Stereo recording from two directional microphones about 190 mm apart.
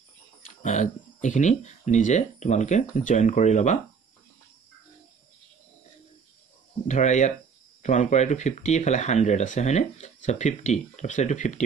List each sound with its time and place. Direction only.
0.6 s speech: 40° left (ahead or behind)
6.9 s speech: 40° left (ahead or behind)